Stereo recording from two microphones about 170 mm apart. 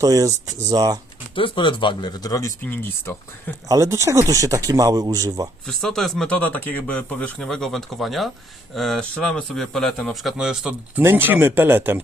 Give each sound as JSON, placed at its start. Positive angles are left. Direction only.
{"t": 0.0, "sound": "speech", "side_deg": -20}
{"t": 1.4, "sound": "speech", "side_deg": 30}
{"t": 3.7, "sound": "speech", "side_deg": -15}
{"t": 5.6, "sound": "a man's voice", "side_deg": 0}